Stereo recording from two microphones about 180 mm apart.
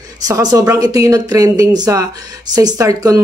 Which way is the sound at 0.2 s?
20° right (ahead or behind).